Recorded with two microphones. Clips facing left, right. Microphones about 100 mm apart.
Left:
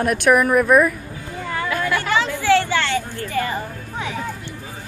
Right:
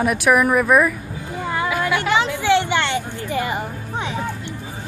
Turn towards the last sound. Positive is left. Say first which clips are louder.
# right 2 dB
turn(degrees=-20)  # may be behind; listen again after turning